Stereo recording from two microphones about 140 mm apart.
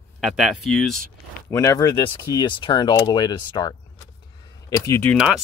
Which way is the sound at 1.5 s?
20° left (ahead or behind).